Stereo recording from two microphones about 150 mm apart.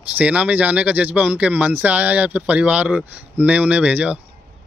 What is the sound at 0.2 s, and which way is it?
Speech, 10° right (ahead or behind).